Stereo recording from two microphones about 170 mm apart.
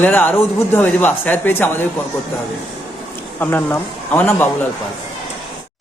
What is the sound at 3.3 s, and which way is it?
Speech, 10° left (ahead or behind).